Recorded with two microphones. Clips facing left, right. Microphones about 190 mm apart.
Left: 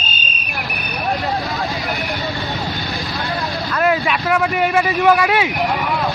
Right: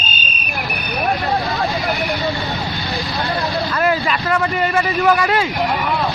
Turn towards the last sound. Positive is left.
turn(degrees=5)  # may be behind; listen again after turning